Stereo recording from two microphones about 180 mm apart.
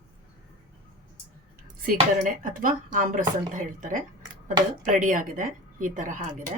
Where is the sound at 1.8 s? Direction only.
50° right (ahead or behind).